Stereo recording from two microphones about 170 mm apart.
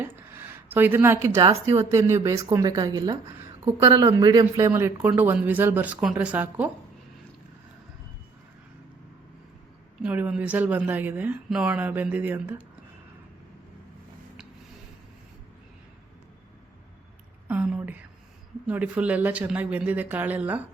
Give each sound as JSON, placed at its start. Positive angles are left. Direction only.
{"t": 0.0, "sound": "a woman's voice", "side_deg": -10}
{"t": 10.0, "sound": "speech", "side_deg": -10}
{"t": 17.5, "sound": "a sound", "side_deg": -5}
{"t": 18.6, "sound": "speech", "side_deg": -10}